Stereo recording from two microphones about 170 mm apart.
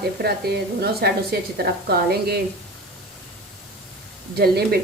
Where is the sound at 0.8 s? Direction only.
70° right (ahead or behind).